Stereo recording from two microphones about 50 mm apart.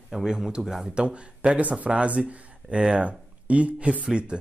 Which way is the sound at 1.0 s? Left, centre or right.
Right.